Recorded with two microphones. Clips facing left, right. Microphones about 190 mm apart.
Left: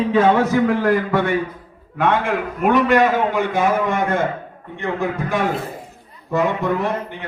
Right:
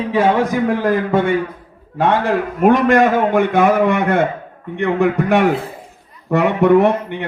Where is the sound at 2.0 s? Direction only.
40° right (ahead or behind).